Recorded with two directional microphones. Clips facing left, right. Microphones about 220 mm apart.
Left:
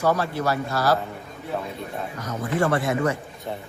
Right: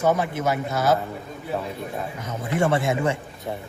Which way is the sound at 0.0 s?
20° right (ahead or behind).